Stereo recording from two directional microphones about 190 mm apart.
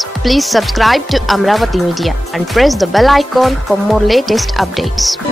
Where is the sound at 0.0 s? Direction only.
Centre (ahead or behind).